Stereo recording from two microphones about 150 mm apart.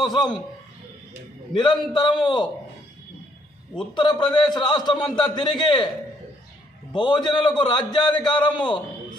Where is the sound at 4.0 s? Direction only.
30° left (ahead or behind).